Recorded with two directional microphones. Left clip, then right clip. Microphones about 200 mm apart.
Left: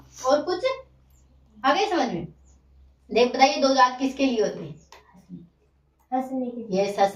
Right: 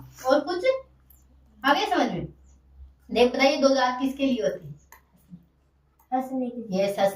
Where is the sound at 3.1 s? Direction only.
10° left (ahead or behind).